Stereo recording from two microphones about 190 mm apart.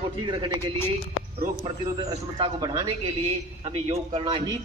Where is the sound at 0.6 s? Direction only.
10° left (ahead or behind).